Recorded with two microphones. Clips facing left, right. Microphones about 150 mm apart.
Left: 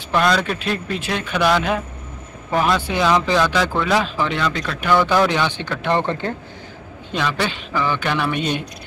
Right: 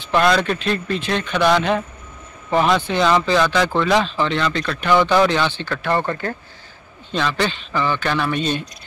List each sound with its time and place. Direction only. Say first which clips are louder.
0.2 s speech: right 2 dB; centre (ahead or behind)